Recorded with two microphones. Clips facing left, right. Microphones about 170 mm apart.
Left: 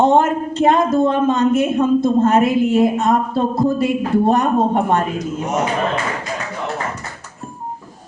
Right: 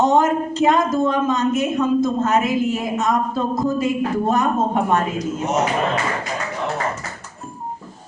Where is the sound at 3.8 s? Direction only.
60° left (ahead or behind).